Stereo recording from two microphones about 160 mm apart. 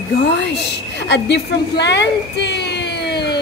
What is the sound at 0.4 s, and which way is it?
A woman's voice, 90° left.